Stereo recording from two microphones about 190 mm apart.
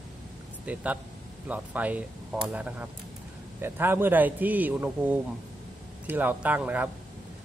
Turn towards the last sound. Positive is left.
turn(degrees=-10)  # may be behind; listen again after turning